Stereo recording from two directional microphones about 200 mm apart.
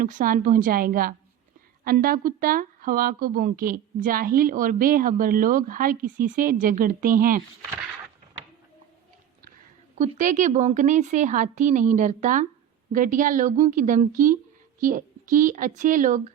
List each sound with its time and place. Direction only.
0.0 s speech: 45° right (ahead or behind)
10.0 s a woman's voice: 40° right (ahead or behind)